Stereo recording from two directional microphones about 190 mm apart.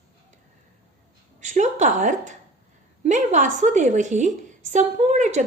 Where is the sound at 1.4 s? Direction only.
40° right (ahead or behind).